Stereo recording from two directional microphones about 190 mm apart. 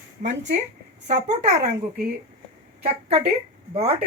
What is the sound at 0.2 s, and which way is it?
Speech, 45° right (ahead or behind).